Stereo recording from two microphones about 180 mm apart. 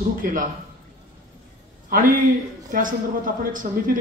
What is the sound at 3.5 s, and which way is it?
Speech, 50° right (ahead or behind).